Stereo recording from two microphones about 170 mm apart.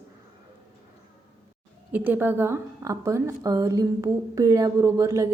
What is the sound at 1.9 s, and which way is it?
A woman's voice, 10° right (ahead or behind).